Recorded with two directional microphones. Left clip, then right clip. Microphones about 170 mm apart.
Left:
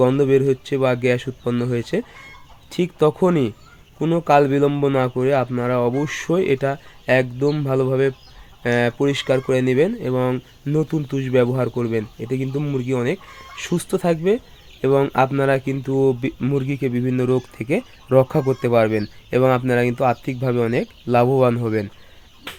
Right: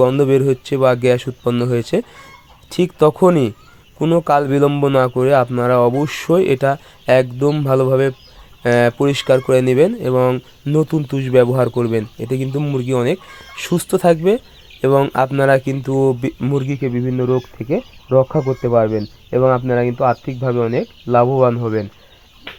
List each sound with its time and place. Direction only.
0.0 s speech: 25° right (ahead or behind)
16.4 s speech: 10° right (ahead or behind)
16.9 s speech: 5° left (ahead or behind)